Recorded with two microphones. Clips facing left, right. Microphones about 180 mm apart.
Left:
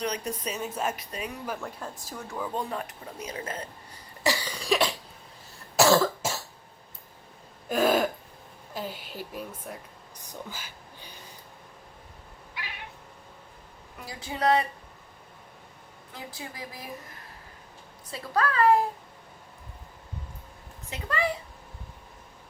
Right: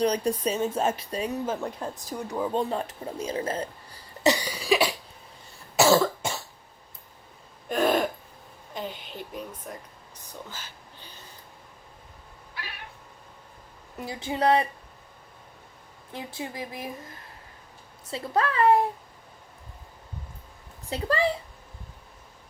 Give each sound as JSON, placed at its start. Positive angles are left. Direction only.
{"t": 0.0, "sound": "speech", "side_deg": -35}
{"t": 4.2, "sound": "cough", "side_deg": -20}
{"t": 7.7, "sound": "throat clearing", "side_deg": 0}
{"t": 8.7, "sound": "a woman's voice", "side_deg": 5}
{"t": 10.2, "sound": "a sound", "side_deg": 10}
{"t": 14.0, "sound": "speech", "side_deg": -25}
{"t": 16.1, "sound": "speech", "side_deg": -25}
{"t": 18.1, "sound": "speech", "side_deg": -25}
{"t": 20.9, "sound": "a woman's voice", "side_deg": -30}